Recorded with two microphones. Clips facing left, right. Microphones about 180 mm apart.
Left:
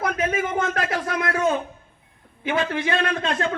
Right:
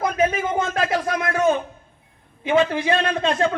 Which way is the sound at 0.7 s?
25° right (ahead or behind).